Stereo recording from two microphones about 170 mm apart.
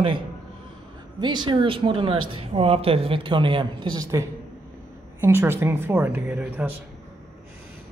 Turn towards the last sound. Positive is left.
turn(degrees=-10)  # may be behind; listen again after turning